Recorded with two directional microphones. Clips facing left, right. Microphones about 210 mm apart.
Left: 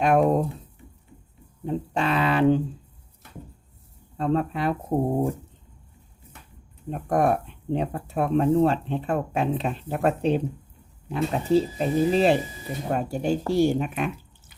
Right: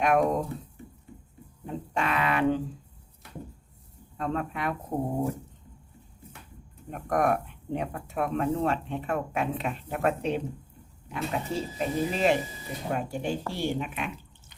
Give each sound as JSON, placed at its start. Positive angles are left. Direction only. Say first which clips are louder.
{"t": 0.0, "sound": "speech", "louder": "left 4 dB", "side_deg": 30}
{"t": 1.6, "sound": "a sound", "louder": "left 5 dB", "side_deg": 30}
{"t": 4.2, "sound": "speech", "louder": "left 6 dB", "side_deg": 30}
{"t": 6.9, "sound": "speech", "louder": "left 3 dB", "side_deg": 30}